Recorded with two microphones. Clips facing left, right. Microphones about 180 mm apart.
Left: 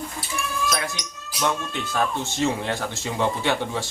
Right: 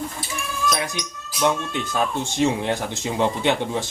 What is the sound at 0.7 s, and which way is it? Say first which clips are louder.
Music: right 4 dB; 20° right (ahead or behind).